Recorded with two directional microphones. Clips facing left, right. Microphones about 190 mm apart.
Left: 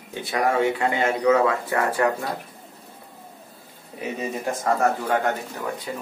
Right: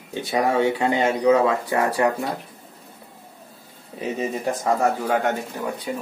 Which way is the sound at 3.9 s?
25° right (ahead or behind).